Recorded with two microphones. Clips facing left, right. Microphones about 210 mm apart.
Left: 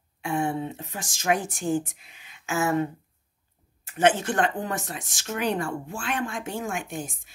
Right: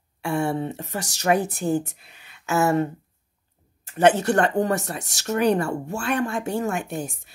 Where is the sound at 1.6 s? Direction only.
40° right (ahead or behind).